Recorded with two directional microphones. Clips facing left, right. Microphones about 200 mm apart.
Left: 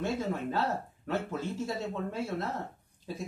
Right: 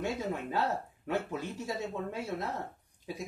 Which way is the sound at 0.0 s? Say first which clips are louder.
Left 2 dB; 15° right (ahead or behind).